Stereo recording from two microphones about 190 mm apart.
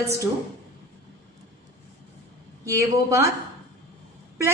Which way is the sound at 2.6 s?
15° right (ahead or behind).